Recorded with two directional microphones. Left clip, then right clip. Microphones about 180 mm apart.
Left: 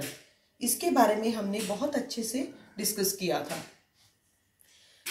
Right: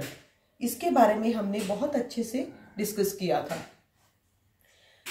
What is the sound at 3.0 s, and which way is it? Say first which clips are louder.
Speech: right 3 dB; 20° right (ahead or behind).